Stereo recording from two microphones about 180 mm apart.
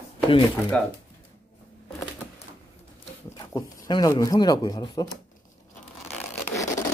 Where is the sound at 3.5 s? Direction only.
20° left (ahead or behind).